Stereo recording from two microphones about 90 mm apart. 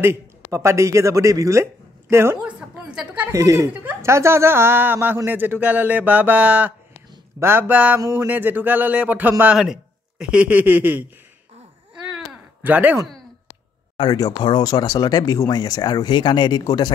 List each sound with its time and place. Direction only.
0.0 s speech: 30° right (ahead or behind)
2.4 s a woman's voice: 10° right (ahead or behind)
3.3 s a woman's voice: 35° right (ahead or behind); by 6.7 s 15° right (ahead or behind)
7.3 s a man's voice: 25° right (ahead or behind)
7.7 s a sound: 15° right (ahead or behind)
8.3 s a man's voice: 20° right (ahead or behind)
9.6 s speech: 5° right (ahead or behind)
11.9 s a sound: 5° right (ahead or behind)
12.6 s a man's voice: 20° right (ahead or behind)
13.9 s speech: 45° left (ahead or behind)